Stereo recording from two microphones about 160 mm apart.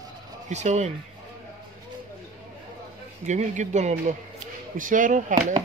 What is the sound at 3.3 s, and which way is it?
Speech, 45° right (ahead or behind).